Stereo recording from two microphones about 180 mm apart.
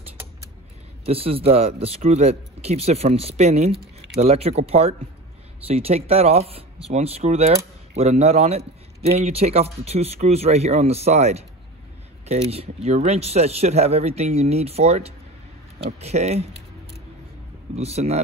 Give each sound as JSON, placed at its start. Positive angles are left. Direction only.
{"t": 1.0, "sound": "speech", "side_deg": -30}
{"t": 17.7, "sound": "speech", "side_deg": -35}